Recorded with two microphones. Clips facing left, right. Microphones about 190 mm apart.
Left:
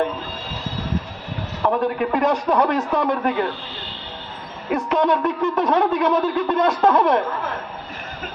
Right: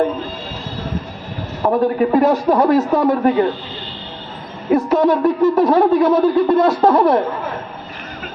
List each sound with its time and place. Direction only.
1.6 s a man's voice: 30° right (ahead or behind)
4.7 s a man's voice: 35° right (ahead or behind)